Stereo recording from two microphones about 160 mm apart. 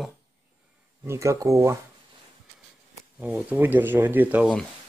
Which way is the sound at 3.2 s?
10° right (ahead or behind).